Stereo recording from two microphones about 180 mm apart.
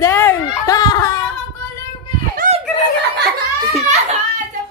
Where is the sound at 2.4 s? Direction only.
45° right (ahead or behind).